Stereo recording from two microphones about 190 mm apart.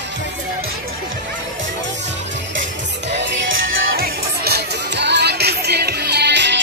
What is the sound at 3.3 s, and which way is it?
Music, 75° right (ahead or behind).